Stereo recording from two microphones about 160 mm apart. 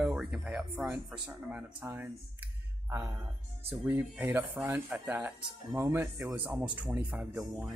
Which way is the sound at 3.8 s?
15° right (ahead or behind).